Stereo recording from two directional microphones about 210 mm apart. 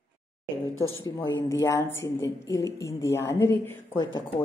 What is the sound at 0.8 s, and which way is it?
Speech, 70° left (ahead or behind).